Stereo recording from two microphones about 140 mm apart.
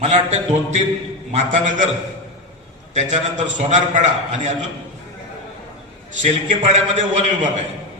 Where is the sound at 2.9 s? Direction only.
55° right (ahead or behind).